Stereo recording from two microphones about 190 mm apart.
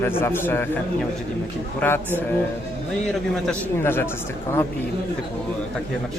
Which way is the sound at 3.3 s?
10° left (ahead or behind).